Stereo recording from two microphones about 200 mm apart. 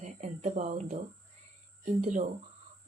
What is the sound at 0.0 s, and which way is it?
Cricket, 35° right (ahead or behind).